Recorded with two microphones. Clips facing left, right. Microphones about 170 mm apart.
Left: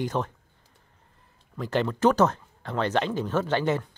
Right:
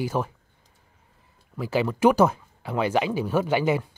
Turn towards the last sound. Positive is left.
turn(degrees=-10)  # may be behind; listen again after turning